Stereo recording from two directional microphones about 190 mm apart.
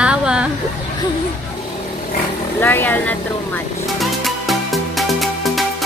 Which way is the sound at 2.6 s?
10° left (ahead or behind).